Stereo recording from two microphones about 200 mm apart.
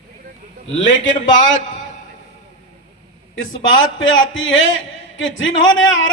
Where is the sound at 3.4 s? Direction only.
80° left.